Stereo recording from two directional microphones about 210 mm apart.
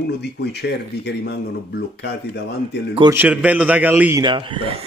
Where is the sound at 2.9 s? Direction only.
20° right (ahead or behind).